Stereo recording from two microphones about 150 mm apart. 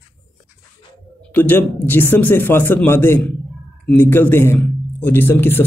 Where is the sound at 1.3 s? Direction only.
10° left (ahead or behind).